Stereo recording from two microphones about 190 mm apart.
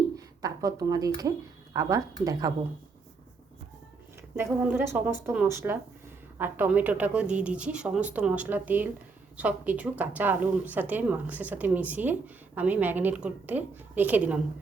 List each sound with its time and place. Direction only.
0.2 s speech: 20° right (ahead or behind)
4.4 s speech: 10° right (ahead or behind)